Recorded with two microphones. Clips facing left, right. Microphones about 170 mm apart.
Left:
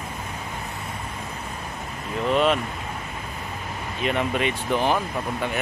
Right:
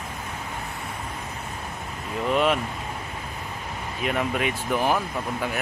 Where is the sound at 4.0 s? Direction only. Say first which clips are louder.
Left 2 dB; 5° right (ahead or behind).